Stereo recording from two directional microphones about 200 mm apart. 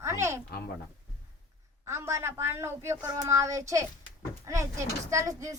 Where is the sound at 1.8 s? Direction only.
15° right (ahead or behind).